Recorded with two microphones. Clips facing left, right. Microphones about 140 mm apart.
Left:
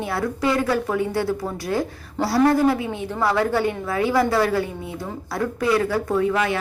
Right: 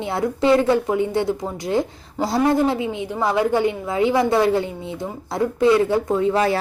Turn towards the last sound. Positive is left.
turn(degrees=-35)  # may be behind; listen again after turning